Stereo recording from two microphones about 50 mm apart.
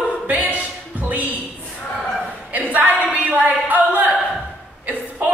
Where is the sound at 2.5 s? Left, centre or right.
Right.